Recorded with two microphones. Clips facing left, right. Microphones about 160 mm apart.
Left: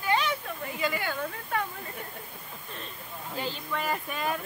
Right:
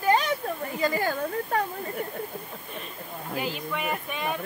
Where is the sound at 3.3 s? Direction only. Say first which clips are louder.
Right 2 dB; 5° right (ahead or behind).